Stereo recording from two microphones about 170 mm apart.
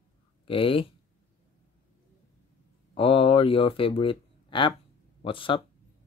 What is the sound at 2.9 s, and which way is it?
Speech, 35° left (ahead or behind).